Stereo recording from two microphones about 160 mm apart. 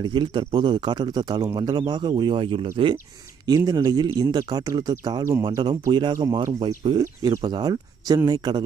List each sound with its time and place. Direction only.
0.0 s speech: 30° right (ahead or behind)